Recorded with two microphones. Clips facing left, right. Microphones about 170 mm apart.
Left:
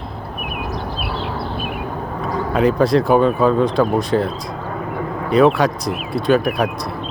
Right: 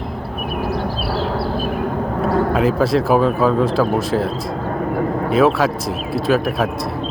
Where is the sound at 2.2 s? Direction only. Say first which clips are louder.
Right 6 dB; 60° right (ahead or behind).